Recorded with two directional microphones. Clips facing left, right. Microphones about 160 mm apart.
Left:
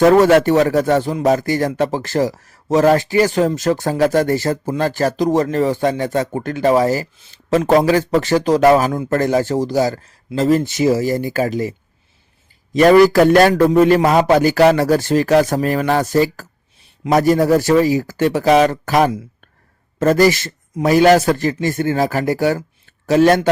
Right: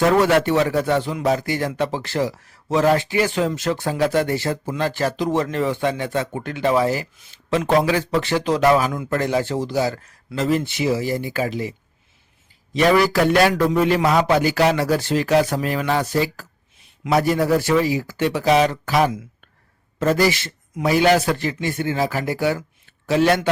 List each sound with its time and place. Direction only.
0.1 s a man's voice: 45° left (ahead or behind)
12.7 s a man's voice: 45° left (ahead or behind)